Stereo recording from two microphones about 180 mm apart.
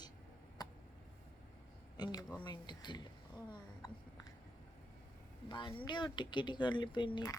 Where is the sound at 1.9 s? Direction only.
20° left (ahead or behind).